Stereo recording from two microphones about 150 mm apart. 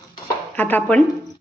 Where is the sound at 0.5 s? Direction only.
10° left (ahead or behind).